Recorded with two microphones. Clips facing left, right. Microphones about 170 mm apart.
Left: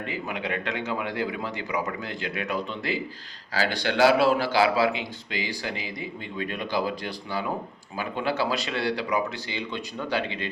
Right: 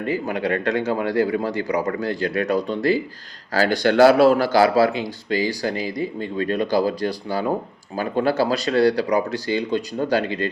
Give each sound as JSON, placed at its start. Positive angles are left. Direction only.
{"t": 0.0, "sound": "a man's voice", "side_deg": -40}